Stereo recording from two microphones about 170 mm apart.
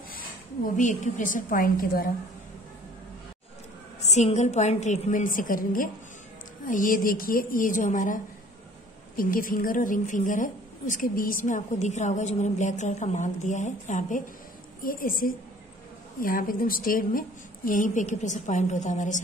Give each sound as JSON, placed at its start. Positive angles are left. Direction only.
{"t": 0.7, "sound": "a woman's voice", "side_deg": 45}
{"t": 4.0, "sound": "a woman's voice", "side_deg": 40}
{"t": 14.8, "sound": "a woman's voice", "side_deg": 55}